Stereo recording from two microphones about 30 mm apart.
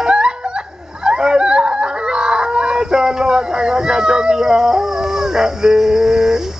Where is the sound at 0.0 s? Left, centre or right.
Right.